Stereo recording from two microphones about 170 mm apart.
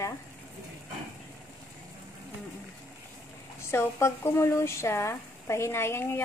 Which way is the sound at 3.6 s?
15° left (ahead or behind).